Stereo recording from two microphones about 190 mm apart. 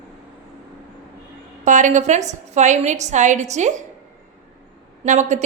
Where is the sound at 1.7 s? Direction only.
40° right (ahead or behind).